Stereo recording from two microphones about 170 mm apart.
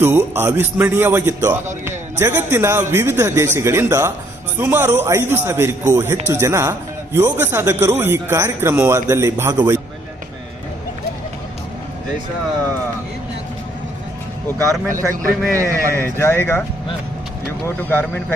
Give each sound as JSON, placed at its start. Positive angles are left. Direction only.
{"t": 0.0, "sound": "speech", "side_deg": -15}
{"t": 15.5, "sound": "speech", "side_deg": -15}
{"t": 16.0, "sound": "speech", "side_deg": 15}
{"t": 17.7, "sound": "speech", "side_deg": 10}